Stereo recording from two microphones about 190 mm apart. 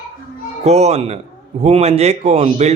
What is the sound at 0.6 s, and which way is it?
A man's voice, 35° right (ahead or behind).